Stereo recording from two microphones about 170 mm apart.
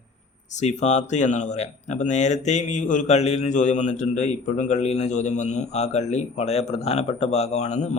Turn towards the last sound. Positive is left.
turn(degrees=40)  # may be behind; listen again after turning